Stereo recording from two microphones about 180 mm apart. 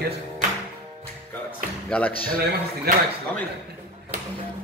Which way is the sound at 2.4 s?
55° right (ahead or behind).